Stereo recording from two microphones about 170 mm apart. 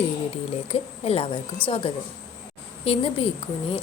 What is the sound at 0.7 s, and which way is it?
Speech, 35° left (ahead or behind).